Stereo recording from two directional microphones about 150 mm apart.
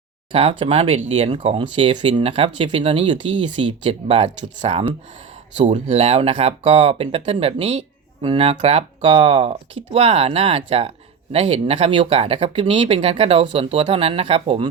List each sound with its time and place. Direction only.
0.3 s speech: 40° right (ahead or behind)